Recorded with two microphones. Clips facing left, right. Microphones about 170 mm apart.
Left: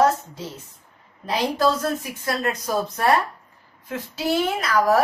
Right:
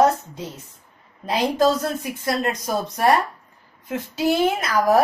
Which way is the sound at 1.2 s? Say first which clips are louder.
Right 2 dB; 20° right (ahead or behind).